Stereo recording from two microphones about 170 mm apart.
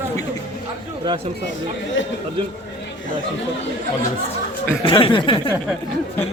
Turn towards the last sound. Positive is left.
turn(degrees=30)  # may be behind; listen again after turning